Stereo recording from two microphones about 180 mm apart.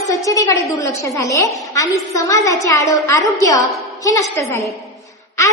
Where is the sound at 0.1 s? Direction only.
20° left (ahead or behind).